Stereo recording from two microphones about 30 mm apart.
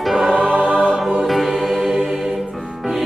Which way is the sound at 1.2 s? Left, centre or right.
Centre.